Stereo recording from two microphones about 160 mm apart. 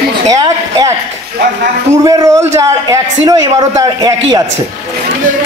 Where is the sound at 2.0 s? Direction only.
20° right (ahead or behind).